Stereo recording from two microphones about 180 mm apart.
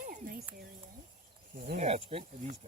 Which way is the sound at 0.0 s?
50° right (ahead or behind).